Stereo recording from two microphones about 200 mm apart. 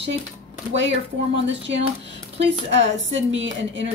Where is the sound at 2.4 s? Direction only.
65° right (ahead or behind).